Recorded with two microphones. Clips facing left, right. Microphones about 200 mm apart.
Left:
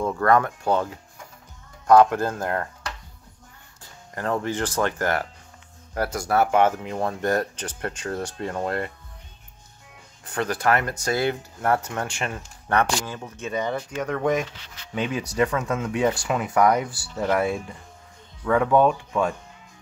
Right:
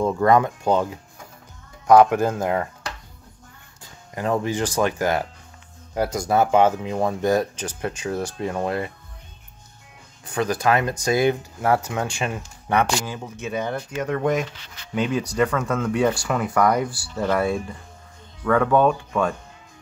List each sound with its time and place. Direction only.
0.0 s speech: 15° right (ahead or behind)
4.1 s speech: 15° right (ahead or behind)
10.2 s speech: 10° right (ahead or behind); by 15.7 s 5° left (ahead or behind)
16.1 s speech: 20° left (ahead or behind)
17.1 s speech: 5° left (ahead or behind)
18.4 s speech: 15° left (ahead or behind)